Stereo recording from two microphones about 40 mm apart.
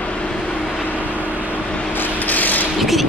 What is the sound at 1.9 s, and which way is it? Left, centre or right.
Rub, left.